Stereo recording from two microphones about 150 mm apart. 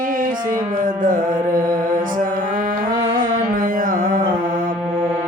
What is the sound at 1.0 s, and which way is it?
Music, 60° right (ahead or behind).